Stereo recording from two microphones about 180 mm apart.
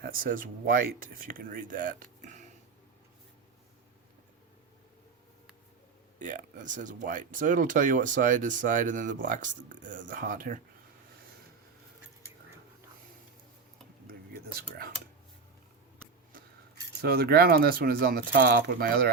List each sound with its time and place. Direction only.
0.0 s speech: 55° right (ahead or behind)
6.1 s speech: 45° right (ahead or behind)
17.0 s speech: 60° right (ahead or behind)